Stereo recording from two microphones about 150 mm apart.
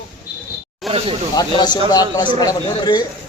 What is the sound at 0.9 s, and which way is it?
Speech, centre (ahead or behind).